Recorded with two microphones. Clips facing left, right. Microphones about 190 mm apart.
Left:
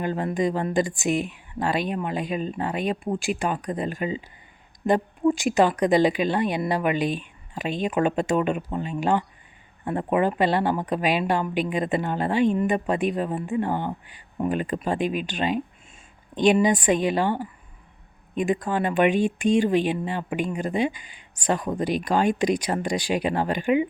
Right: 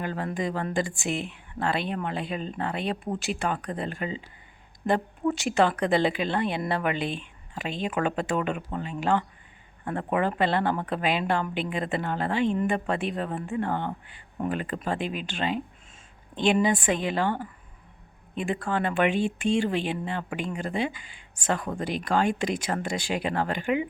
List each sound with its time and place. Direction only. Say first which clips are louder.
0.0 s a woman's voice: left 5 dB; 20° left (ahead or behind)